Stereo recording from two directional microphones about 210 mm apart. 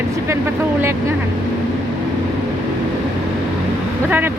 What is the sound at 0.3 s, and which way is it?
Speech, 10° right (ahead or behind).